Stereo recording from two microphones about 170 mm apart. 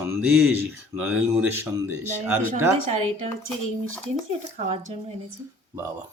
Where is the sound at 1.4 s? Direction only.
15° right (ahead or behind).